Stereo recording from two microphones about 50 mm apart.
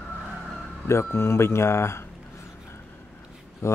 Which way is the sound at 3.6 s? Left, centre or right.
Left.